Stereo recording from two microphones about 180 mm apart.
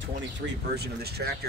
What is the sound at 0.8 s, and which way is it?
Speech, 60° right (ahead or behind).